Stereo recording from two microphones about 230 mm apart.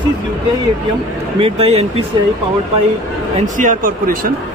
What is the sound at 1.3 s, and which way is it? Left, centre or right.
Speech, right.